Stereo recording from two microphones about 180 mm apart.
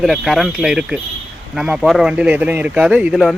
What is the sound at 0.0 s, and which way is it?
Speech, centre (ahead or behind).